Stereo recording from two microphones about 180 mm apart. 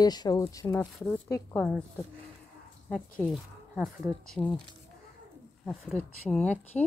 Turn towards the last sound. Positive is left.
turn(degrees=5)  # may be behind; listen again after turning